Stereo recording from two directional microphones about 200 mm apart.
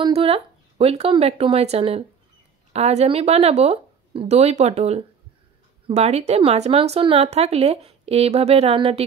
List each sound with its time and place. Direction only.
0.0 s speech: 30° right (ahead or behind)